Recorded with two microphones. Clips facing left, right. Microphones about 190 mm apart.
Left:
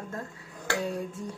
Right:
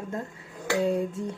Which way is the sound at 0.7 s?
20° right (ahead or behind).